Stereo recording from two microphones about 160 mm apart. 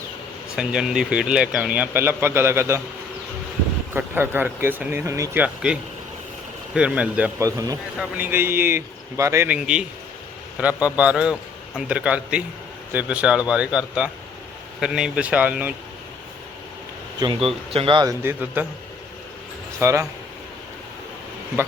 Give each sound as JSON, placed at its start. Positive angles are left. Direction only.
{"t": 0.5, "sound": "speech", "side_deg": -5}
{"t": 3.9, "sound": "speech", "side_deg": -15}
{"t": 7.4, "sound": "a man's voice", "side_deg": -20}
{"t": 9.6, "sound": "a man's voice", "side_deg": -5}
{"t": 17.2, "sound": "a man's voice", "side_deg": -30}
{"t": 19.8, "sound": "speech", "side_deg": -15}